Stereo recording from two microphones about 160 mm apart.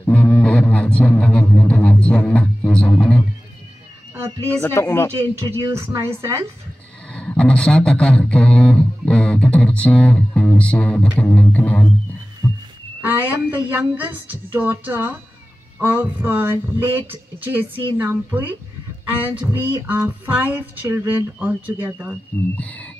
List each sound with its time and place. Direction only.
0.0 s music: 5° left (ahead or behind)
4.6 s a man's voice: 15° left (ahead or behind)
5.2 s a woman's voice: 25° right (ahead or behind)
7.1 s a man's voice: 5° left (ahead or behind)
12.4 s heart sounds: 20° left (ahead or behind)
13.0 s speech: 10° right (ahead or behind)
22.6 s a man's voice: 10° left (ahead or behind)